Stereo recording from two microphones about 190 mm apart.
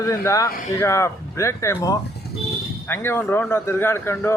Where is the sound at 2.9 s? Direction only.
10° left (ahead or behind).